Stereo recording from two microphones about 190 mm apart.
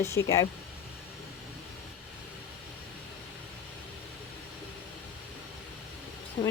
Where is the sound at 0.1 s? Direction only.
15° left (ahead or behind).